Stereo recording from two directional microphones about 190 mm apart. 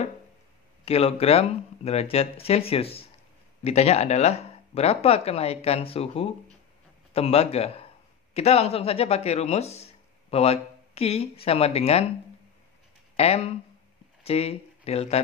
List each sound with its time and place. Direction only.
0.8 s speech: 30° left (ahead or behind)
13.1 s speech: 35° left (ahead or behind)